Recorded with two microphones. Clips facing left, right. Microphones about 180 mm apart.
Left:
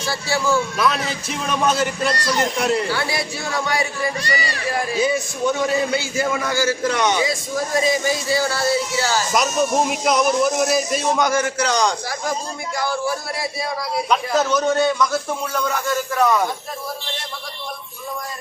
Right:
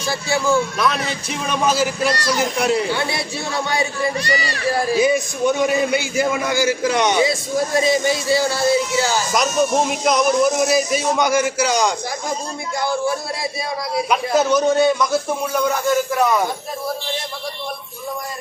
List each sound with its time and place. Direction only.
0.1 s a man's voice: 15° right (ahead or behind)
0.8 s a man's voice: centre (ahead or behind)
2.9 s speech: 25° right (ahead or behind)
4.9 s a man's voice: 15° right (ahead or behind)
9.3 s a man's voice: 5° left (ahead or behind)
12.8 s speech: 25° right (ahead or behind)
14.1 s a man's voice: 10° right (ahead or behind)